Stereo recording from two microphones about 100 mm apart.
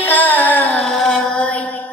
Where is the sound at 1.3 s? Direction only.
15° left (ahead or behind).